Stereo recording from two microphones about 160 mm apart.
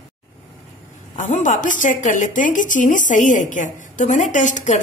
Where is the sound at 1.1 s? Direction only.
50° left (ahead or behind).